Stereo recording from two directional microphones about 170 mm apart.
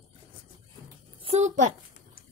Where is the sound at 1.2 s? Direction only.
45° right (ahead or behind).